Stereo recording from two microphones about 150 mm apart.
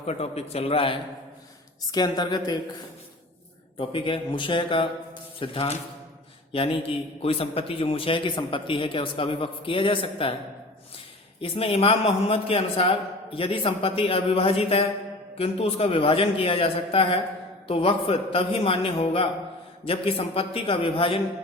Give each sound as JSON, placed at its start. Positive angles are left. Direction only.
{"t": 0.0, "sound": "a man's voice", "side_deg": 45}
{"t": 1.9, "sound": "a woman's voice", "side_deg": 25}
{"t": 3.8, "sound": "a man's voice", "side_deg": 35}
{"t": 11.3, "sound": "a man's voice", "side_deg": 35}